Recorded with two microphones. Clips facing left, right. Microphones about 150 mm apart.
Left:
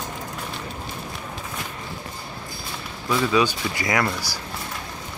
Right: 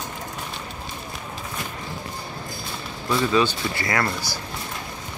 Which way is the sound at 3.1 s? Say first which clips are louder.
Even; 5° left (ahead or behind).